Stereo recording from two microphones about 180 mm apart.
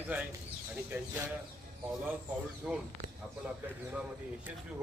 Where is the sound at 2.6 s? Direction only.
5° right (ahead or behind).